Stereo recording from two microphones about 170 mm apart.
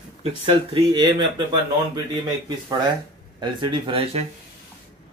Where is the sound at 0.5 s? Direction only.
25° right (ahead or behind).